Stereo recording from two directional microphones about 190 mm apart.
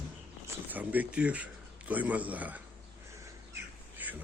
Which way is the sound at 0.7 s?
10° right (ahead or behind).